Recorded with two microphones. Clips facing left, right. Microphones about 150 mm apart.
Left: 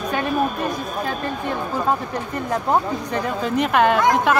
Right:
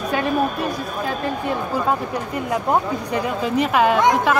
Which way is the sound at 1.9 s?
5° right (ahead or behind).